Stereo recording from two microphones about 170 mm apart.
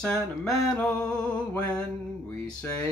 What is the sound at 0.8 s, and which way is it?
Mantra, 5° left (ahead or behind).